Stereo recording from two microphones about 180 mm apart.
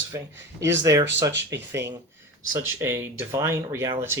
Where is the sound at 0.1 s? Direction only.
15° right (ahead or behind).